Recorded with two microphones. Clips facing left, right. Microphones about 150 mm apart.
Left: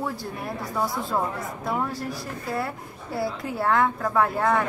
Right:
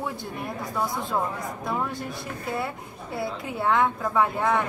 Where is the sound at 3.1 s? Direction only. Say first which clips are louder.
Left 2 dB; centre (ahead or behind).